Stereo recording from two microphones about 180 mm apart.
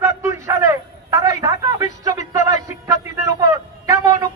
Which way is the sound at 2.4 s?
20° right (ahead or behind).